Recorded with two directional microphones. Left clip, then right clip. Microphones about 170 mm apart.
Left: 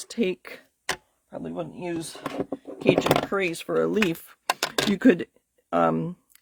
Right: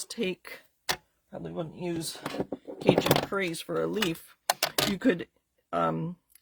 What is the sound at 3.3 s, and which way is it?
Speech, 25° left (ahead or behind).